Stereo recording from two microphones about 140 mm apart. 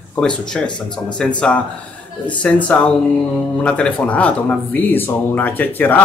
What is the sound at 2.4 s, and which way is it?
Speech, 5° left (ahead or behind).